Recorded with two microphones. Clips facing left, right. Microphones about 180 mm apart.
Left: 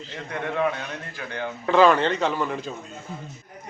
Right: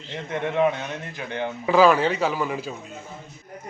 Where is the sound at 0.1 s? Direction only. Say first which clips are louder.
Right 3 dB; 20° right (ahead or behind).